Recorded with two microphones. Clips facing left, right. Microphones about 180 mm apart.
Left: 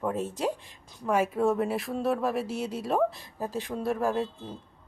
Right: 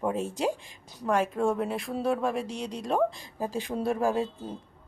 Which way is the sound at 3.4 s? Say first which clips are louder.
Right 2 dB; 10° right (ahead or behind).